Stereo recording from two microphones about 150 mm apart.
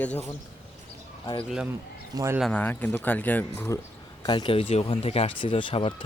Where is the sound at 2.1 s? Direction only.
20° right (ahead or behind).